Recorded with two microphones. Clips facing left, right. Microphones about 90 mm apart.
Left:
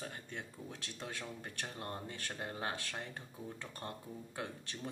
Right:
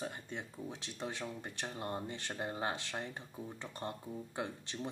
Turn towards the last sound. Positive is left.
turn(degrees=-20)  # may be behind; listen again after turning